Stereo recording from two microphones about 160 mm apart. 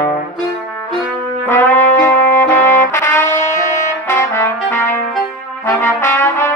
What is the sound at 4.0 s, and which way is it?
Brass instrument, 15° left (ahead or behind).